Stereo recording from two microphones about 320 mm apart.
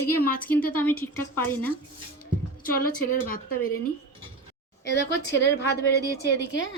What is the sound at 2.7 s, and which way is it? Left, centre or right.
Speech, left.